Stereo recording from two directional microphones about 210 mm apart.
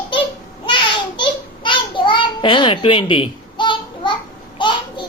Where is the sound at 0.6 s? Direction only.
20° left (ahead or behind).